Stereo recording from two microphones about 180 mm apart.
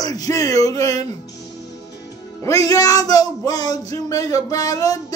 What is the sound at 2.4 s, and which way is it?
Music, 20° left (ahead or behind).